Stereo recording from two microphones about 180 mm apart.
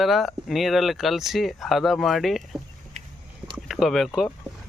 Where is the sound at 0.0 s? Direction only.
Centre (ahead or behind).